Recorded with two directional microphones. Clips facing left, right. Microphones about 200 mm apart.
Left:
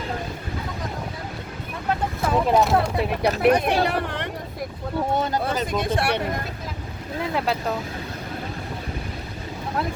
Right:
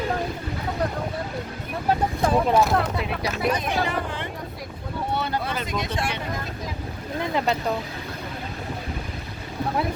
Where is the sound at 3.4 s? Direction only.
65° left (ahead or behind).